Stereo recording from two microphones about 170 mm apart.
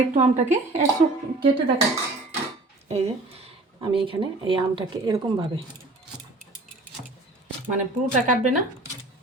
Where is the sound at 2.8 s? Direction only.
35° right (ahead or behind).